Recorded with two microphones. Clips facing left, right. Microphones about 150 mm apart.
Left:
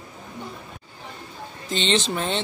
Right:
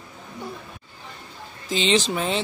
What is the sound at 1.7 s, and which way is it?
Speech, 5° right (ahead or behind).